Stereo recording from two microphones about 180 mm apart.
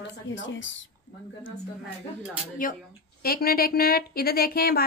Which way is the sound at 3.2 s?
55° left (ahead or behind).